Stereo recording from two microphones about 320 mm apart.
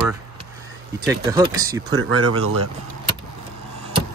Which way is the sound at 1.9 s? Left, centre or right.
Right.